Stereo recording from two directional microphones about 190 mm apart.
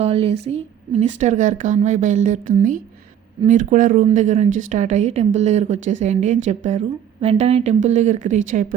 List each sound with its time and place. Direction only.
0.0 s a woman's voice: 35° right (ahead or behind)